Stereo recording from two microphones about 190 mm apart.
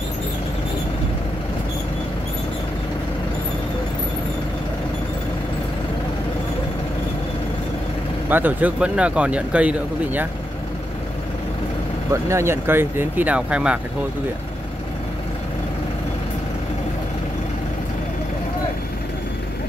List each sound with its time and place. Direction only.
8.3 s speech: 10° right (ahead or behind)
12.1 s speech: 15° right (ahead or behind)